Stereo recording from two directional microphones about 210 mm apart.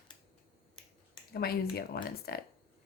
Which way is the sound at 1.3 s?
45° left (ahead or behind).